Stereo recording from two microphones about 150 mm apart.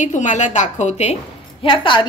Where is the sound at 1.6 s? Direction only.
35° left (ahead or behind).